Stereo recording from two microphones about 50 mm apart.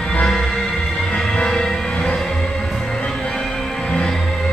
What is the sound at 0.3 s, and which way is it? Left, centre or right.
Music, centre.